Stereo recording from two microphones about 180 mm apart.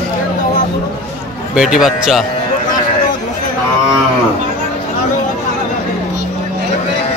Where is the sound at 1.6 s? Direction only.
Centre (ahead or behind).